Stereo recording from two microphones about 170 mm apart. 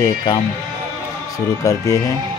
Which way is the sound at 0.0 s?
20° left (ahead or behind).